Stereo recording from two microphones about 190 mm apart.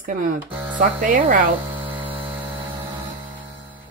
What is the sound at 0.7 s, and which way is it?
Speech, 45° right (ahead or behind).